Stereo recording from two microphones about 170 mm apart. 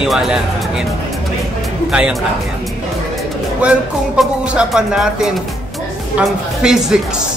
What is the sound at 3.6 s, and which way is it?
Speech, 5° right (ahead or behind).